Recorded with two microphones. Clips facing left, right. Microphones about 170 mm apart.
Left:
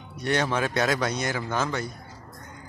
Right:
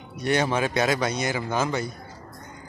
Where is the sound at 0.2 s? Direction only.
5° right (ahead or behind).